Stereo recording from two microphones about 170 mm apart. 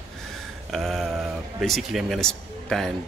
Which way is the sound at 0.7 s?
Centre (ahead or behind).